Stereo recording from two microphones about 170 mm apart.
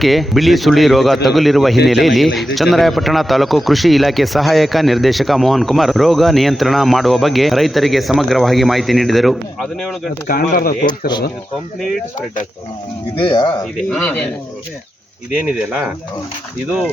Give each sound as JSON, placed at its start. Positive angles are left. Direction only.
{"t": 0.0, "sound": "a man's voice", "side_deg": 0}
{"t": 10.2, "sound": "speech", "side_deg": 60}
{"t": 13.2, "sound": "speech", "side_deg": 25}
{"t": 13.9, "sound": "speech", "side_deg": 10}
{"t": 15.4, "sound": "a man's voice", "side_deg": -5}